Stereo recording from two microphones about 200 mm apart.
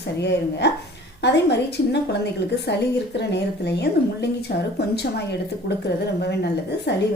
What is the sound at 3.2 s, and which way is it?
Speech, 55° left (ahead or behind).